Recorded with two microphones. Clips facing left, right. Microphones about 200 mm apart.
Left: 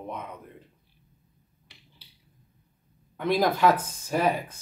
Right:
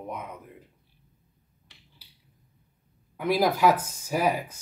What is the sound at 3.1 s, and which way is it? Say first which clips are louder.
Speech: even; 10° right (ahead or behind).